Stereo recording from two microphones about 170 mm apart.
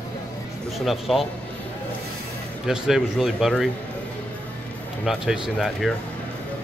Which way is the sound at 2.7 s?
Centre (ahead or behind).